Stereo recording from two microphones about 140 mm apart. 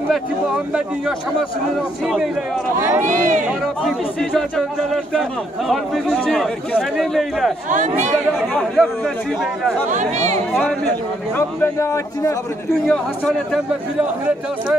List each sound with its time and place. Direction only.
3.0 s speech: 70° right (ahead or behind)
3.4 s speech: centre (ahead or behind)
9.8 s speech: 60° right (ahead or behind)
11.3 s a man's voice: 20° left (ahead or behind)
12.8 s speech: 5° left (ahead or behind)